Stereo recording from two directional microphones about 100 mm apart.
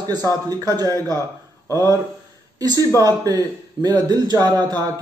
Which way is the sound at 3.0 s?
40° right (ahead or behind).